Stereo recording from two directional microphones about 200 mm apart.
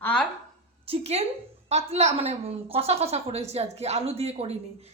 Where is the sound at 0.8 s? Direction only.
30° right (ahead or behind).